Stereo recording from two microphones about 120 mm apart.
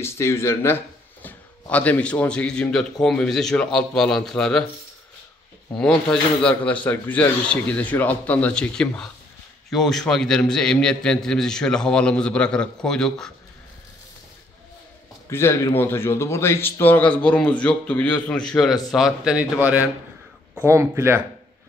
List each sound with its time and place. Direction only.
0.0 s speech: 20° left (ahead or behind); by 4.6 s 5° left (ahead or behind)
5.8 s a man's voice: 5° left (ahead or behind)
15.2 s speech: 20° left (ahead or behind); by 21.2 s 20° right (ahead or behind)